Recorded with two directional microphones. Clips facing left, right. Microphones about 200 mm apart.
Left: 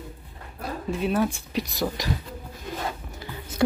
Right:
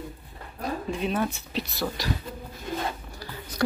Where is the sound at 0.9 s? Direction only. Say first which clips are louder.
Left 6 dB; 5° left (ahead or behind).